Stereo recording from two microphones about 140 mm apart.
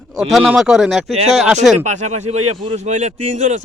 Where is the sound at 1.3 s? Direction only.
Centre (ahead or behind).